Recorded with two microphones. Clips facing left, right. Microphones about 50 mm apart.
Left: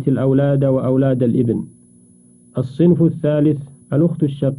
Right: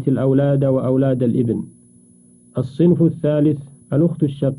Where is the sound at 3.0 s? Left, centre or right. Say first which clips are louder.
Left 1 dB; left.